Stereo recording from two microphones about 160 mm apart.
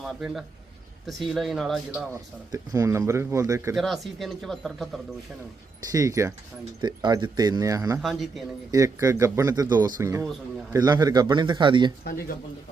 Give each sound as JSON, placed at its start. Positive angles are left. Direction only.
{"t": 0.2, "sound": "speech", "side_deg": 0}
{"t": 2.1, "sound": "a man's voice", "side_deg": -20}
{"t": 3.8, "sound": "speech", "side_deg": 0}
{"t": 5.9, "sound": "a man's voice", "side_deg": -20}
{"t": 7.9, "sound": "speech", "side_deg": 0}
{"t": 8.7, "sound": "a man's voice", "side_deg": -20}